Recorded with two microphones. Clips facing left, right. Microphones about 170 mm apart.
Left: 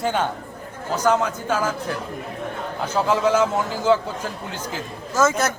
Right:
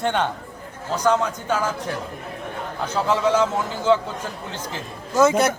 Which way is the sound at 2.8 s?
10° left (ahead or behind).